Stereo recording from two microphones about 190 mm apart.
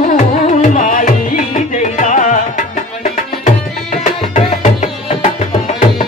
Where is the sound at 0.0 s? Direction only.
40° left (ahead or behind).